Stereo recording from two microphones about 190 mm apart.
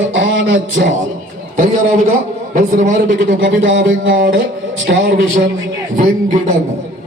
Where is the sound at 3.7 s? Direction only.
90° right.